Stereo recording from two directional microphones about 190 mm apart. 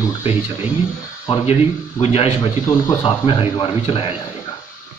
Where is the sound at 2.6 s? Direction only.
20° left (ahead or behind).